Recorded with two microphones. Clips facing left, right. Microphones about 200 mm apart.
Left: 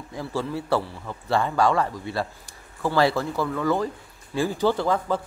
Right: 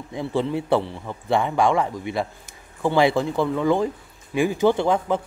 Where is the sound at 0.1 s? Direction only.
20° right (ahead or behind).